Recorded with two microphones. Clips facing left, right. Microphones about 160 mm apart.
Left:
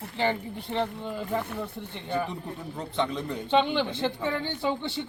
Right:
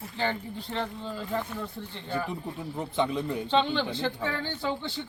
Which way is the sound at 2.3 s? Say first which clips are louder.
Right 1 dB; 10° right (ahead or behind).